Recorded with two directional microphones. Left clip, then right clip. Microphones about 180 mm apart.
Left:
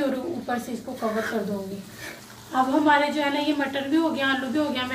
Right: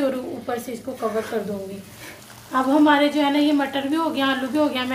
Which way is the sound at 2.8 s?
35° right (ahead or behind).